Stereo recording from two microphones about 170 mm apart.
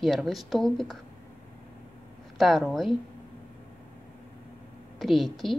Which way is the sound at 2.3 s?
Centre (ahead or behind).